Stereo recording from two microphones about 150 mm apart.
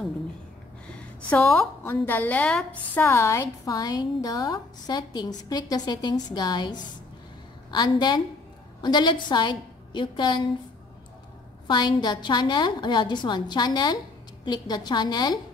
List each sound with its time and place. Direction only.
1.3 s a woman's voice: 10° left (ahead or behind)
3.0 s a woman's voice: 20° left (ahead or behind)
11.6 s a woman's voice: 30° left (ahead or behind)